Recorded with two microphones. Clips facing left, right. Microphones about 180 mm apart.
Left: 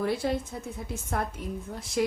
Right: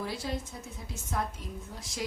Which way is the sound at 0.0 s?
55° left (ahead or behind).